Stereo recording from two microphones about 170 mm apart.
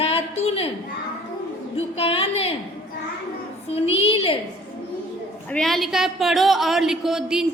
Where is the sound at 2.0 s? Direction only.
35° left (ahead or behind).